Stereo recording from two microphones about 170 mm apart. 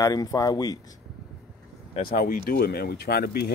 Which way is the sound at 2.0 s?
55° left (ahead or behind).